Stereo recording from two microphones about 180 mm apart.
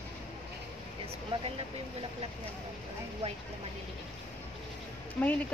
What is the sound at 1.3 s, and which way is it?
Speech, 30° right (ahead or behind).